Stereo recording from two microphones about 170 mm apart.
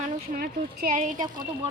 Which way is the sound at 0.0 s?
55° right (ahead or behind).